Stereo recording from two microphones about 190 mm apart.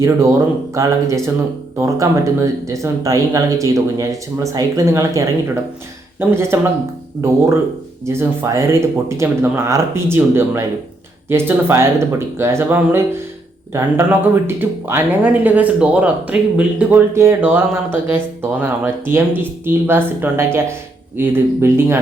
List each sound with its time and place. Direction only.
0.0 s speech: 15° right (ahead or behind)